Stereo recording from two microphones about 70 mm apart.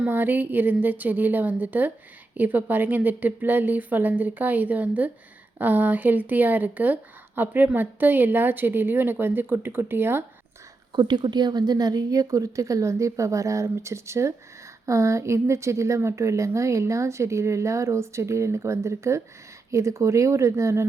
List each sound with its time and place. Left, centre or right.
0.1 s speech: right
10.9 s a woman's voice: right